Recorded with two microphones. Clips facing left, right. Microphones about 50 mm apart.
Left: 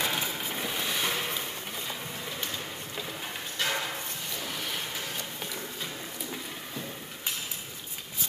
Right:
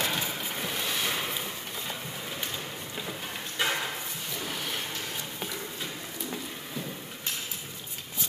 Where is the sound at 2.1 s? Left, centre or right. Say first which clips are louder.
Even; centre.